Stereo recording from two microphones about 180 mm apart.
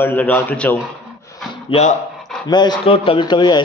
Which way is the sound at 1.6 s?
35° left (ahead or behind).